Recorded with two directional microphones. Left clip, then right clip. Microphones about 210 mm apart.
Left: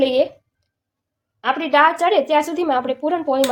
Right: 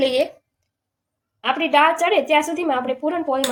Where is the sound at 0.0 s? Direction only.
20° left (ahead or behind).